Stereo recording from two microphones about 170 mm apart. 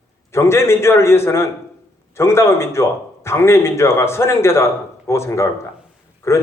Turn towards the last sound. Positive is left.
turn(degrees=15)  # may be behind; listen again after turning